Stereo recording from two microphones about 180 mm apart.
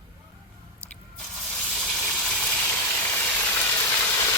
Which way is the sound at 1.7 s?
5° left (ahead or behind).